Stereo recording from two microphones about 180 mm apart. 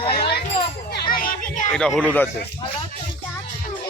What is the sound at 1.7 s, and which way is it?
Speech, 5° left (ahead or behind).